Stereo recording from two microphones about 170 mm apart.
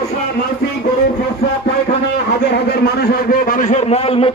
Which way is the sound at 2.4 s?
70° left (ahead or behind).